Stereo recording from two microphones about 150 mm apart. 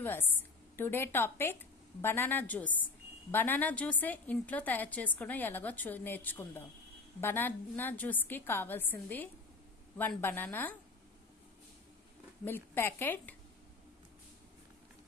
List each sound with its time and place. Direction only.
0.0 s a woman's voice: 15° left (ahead or behind)
12.4 s a woman's voice: 15° left (ahead or behind)